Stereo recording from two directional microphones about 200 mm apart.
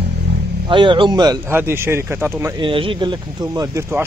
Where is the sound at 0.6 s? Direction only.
25° right (ahead or behind).